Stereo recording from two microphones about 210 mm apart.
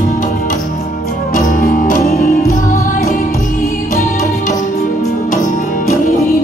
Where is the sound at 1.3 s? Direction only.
40° left (ahead or behind).